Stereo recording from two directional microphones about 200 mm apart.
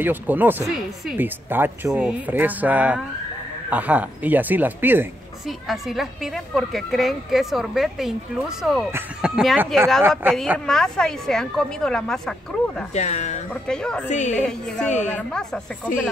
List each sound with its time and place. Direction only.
0.0 s a woman's voice: 10° right (ahead or behind)
12.9 s speech: 35° left (ahead or behind)
13.5 s a woman's voice: 5° left (ahead or behind)
14.0 s speech: 35° left (ahead or behind)
14.3 s a woman's voice: 5° left (ahead or behind)